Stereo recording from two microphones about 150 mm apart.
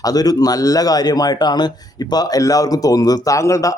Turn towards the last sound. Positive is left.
turn(degrees=20)  # may be behind; listen again after turning